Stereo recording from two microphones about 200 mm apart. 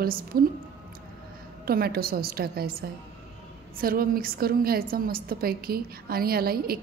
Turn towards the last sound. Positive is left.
turn(degrees=-50)  # may be behind; listen again after turning